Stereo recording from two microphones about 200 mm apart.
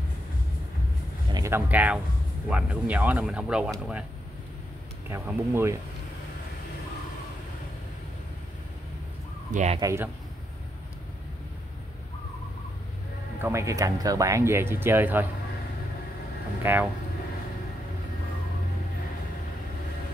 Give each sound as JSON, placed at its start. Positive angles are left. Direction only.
{"t": 1.3, "sound": "speech", "side_deg": -15}
{"t": 5.1, "sound": "speech", "side_deg": -10}
{"t": 9.5, "sound": "speech", "side_deg": -35}
{"t": 9.8, "sound": "speech", "side_deg": -15}
{"t": 13.4, "sound": "speech", "side_deg": -15}
{"t": 16.6, "sound": "speech", "side_deg": -10}